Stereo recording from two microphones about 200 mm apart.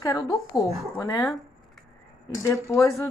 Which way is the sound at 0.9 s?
15° left (ahead or behind).